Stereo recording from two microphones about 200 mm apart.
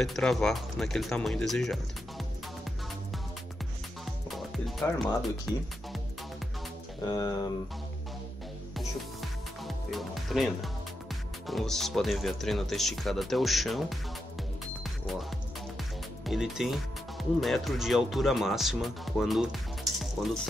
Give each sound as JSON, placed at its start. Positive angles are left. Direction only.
{"t": 0.0, "sound": "speech", "side_deg": 0}
{"t": 4.0, "sound": "music", "side_deg": 0}
{"t": 7.1, "sound": "speech", "side_deg": 20}
{"t": 9.8, "sound": "speech", "side_deg": 0}
{"t": 14.8, "sound": "music", "side_deg": 0}
{"t": 16.3, "sound": "speech", "side_deg": 0}